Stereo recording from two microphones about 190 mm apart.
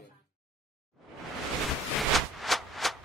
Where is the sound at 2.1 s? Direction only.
Centre (ahead or behind).